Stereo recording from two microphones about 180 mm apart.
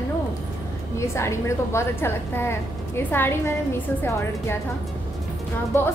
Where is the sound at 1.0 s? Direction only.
15° left (ahead or behind).